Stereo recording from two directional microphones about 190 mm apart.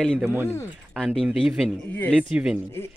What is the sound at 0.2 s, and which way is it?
Speech, 10° right (ahead or behind).